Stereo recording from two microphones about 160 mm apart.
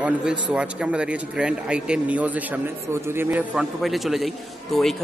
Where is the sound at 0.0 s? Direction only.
5° right (ahead or behind).